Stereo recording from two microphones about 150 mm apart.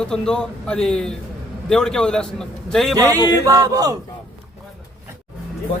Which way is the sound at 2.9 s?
20° right (ahead or behind).